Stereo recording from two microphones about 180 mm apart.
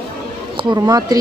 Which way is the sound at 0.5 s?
25° right (ahead or behind).